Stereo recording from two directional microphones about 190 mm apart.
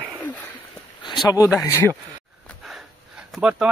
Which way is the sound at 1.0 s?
20° left (ahead or behind).